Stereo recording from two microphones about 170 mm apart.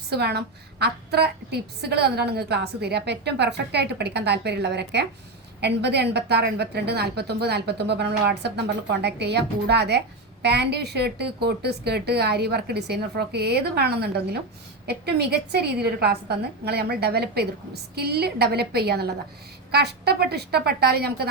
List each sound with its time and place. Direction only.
0.1 s a woman's voice: 75° right (ahead or behind)